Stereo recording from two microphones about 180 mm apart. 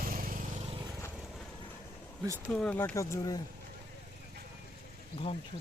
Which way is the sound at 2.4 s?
5° left (ahead or behind).